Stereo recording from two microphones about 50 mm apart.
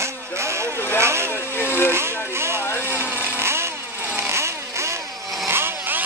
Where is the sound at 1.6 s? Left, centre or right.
Left.